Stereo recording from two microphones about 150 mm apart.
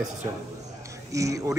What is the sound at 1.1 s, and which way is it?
Speech, 20° right (ahead or behind).